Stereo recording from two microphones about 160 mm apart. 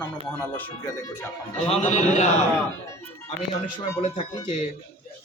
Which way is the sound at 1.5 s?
45° left (ahead or behind).